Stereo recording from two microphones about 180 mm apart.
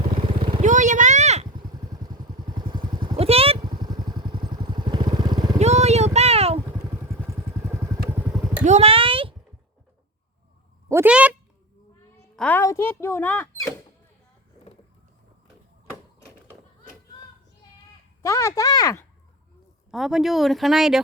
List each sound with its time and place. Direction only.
0.1 s vehicle: 30° right (ahead or behind)
0.6 s a sound: 45° right (ahead or behind)
1.5 s vehicle: 20° right (ahead or behind)
5.5 s vehicle: 35° right (ahead or behind)
6.1 s a sound: 35° right (ahead or behind)
7.3 s vehicle: 10° right (ahead or behind)
8.6 s a sound: 35° right (ahead or behind)
10.8 s speech: 10° right (ahead or behind)
12.4 s a woman's voice: 10° left (ahead or behind)
18.2 s speech: 15° left (ahead or behind)
19.9 s speech: centre (ahead or behind)